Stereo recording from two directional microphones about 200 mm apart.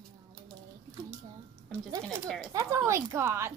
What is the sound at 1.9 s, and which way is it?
Speech, 15° right (ahead or behind).